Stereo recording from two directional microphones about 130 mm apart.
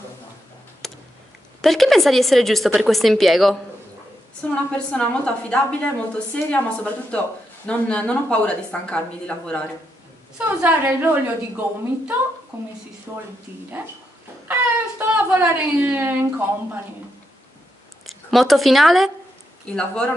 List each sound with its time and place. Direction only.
0.8 s tick: 5° left (ahead or behind)
1.6 s a woman's voice: centre (ahead or behind)
10.3 s speech: 15° right (ahead or behind)
13.1 s speech: 15° right (ahead or behind)
13.5 s speech: 45° left (ahead or behind)
14.5 s speech: 15° right (ahead or behind)
18.0 s a woman's voice: centre (ahead or behind)